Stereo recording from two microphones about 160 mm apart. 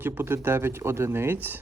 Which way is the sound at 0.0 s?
15° right (ahead or behind).